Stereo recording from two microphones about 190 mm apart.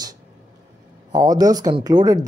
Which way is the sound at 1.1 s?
20° right (ahead or behind).